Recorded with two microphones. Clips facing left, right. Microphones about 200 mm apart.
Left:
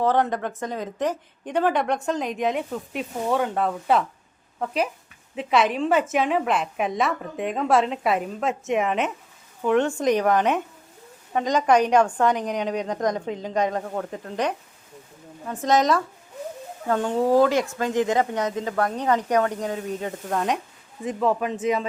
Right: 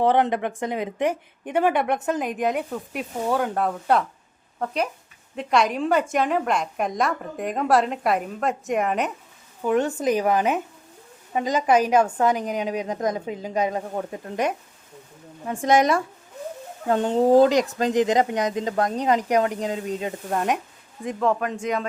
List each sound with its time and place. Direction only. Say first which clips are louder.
0.0 s a woman's voice: right 2 dB; 15° right (ahead or behind)
15.6 s speech: right 1 dB; 10° right (ahead or behind)
16.9 s a woman's voice: right 3 dB; 20° right (ahead or behind); by 21.8 s 5° left (ahead or behind)